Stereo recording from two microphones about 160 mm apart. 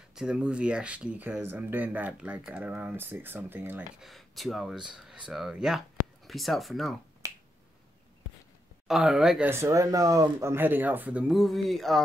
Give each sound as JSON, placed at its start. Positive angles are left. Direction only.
{"t": 0.1, "sound": "speech", "side_deg": -5}
{"t": 4.0, "sound": "speech", "side_deg": 0}
{"t": 7.2, "sound": "finger snapping", "side_deg": -20}
{"t": 8.8, "sound": "speech", "side_deg": 0}
{"t": 9.5, "sound": "speech", "side_deg": -20}